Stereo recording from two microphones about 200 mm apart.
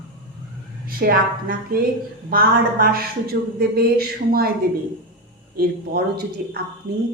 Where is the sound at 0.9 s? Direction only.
45° right (ahead or behind).